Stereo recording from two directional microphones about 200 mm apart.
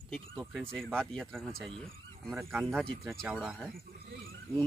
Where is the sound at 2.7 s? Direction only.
10° right (ahead or behind).